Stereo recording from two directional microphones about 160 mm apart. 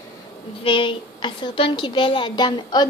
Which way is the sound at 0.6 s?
35° left (ahead or behind).